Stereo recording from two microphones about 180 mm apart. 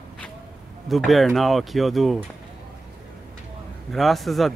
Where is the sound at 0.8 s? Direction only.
Centre (ahead or behind).